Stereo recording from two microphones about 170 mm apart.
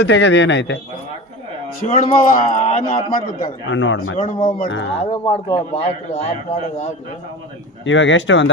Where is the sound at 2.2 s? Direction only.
50° left (ahead or behind).